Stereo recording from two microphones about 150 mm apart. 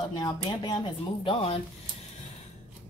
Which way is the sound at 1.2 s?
40° left (ahead or behind).